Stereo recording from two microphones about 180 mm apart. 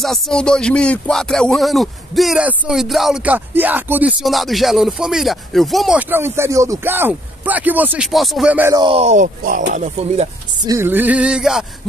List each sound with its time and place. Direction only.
0.0 s speech: 5° left (ahead or behind)
8.7 s speech: 30° right (ahead or behind)
10.6 s music: 15° right (ahead or behind)